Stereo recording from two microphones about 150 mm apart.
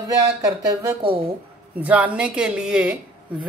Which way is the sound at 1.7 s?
10° right (ahead or behind).